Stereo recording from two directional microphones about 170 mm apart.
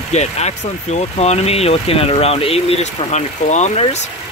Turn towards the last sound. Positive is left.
turn(degrees=40)  # may be behind; listen again after turning